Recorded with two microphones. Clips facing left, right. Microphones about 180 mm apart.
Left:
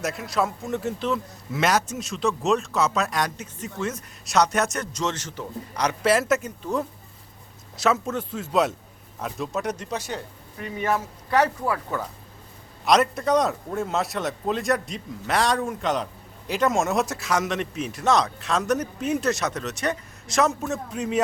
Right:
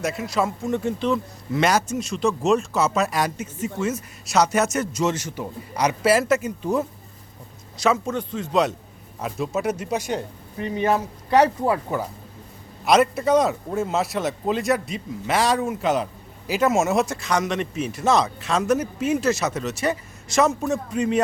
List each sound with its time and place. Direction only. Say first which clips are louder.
0.0 s speech: right 2 dB; centre (ahead or behind)
7.8 s speech: right 2 dB; centre (ahead or behind); by 10.2 s 15° right (ahead or behind)
10.6 s speech: right 4 dB; 30° right (ahead or behind)
11.3 s speech: right 4 dB; 20° right (ahead or behind)
12.8 s speech: right 2 dB; 5° right (ahead or behind)